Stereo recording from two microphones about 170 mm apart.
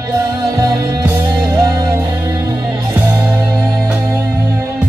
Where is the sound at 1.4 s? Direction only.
20° right (ahead or behind).